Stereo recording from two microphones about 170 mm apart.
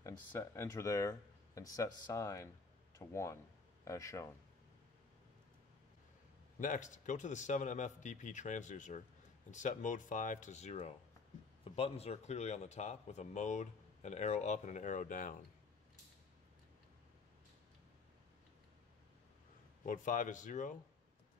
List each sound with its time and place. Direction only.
0.0 s speech: 15° left (ahead or behind)
6.6 s a man's voice: 45° left (ahead or behind)
19.8 s speech: 50° left (ahead or behind)